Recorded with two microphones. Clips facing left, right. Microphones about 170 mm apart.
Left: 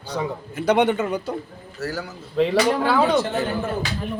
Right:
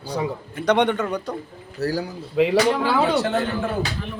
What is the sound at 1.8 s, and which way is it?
Speech, 35° right (ahead or behind).